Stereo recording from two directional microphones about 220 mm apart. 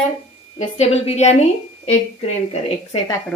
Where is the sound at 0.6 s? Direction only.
30° left (ahead or behind).